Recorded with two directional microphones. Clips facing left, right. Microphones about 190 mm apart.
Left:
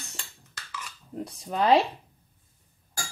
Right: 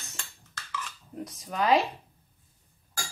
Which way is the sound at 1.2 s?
30° left (ahead or behind).